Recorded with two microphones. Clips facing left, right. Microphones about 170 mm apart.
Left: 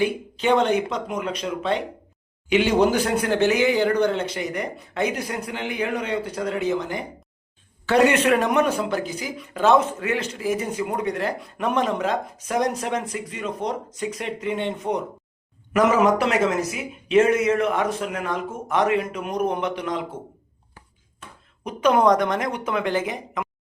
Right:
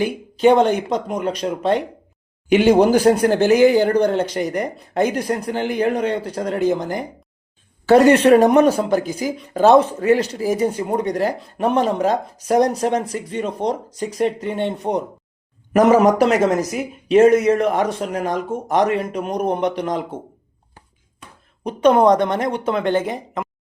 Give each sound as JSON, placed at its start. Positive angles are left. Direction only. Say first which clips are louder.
{"t": 0.0, "sound": "speech", "louder": "right 7 dB", "side_deg": -40}
{"t": 21.6, "sound": "speech", "louder": "right 5 dB", "side_deg": -30}